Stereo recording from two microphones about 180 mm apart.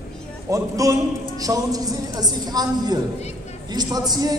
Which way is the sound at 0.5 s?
20° right (ahead or behind).